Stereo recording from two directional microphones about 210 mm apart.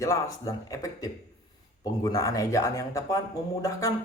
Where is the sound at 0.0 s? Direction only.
15° left (ahead or behind).